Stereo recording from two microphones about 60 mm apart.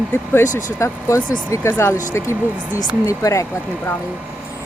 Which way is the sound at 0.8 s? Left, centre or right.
Left.